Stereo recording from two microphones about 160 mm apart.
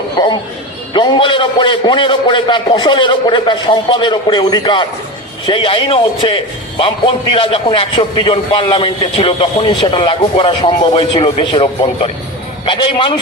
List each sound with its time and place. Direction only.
0.2 s a man's voice: 25° left (ahead or behind)